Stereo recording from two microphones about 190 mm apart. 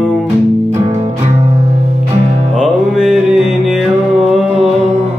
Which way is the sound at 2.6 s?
5° right (ahead or behind).